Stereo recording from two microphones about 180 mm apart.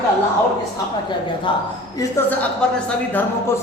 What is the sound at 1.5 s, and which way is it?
Speech, 25° left (ahead or behind).